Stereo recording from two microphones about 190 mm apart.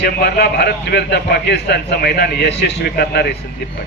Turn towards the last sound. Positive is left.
turn(degrees=60)  # may be behind; listen again after turning